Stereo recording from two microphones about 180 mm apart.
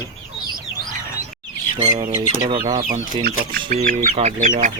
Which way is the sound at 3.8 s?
35° right (ahead or behind).